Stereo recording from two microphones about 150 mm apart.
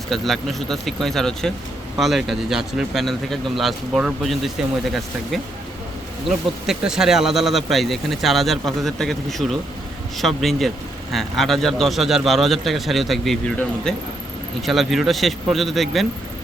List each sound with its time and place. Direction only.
0.1 s a man's voice: centre (ahead or behind)